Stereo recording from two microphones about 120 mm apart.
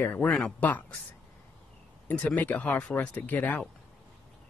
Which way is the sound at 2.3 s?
10° left (ahead or behind).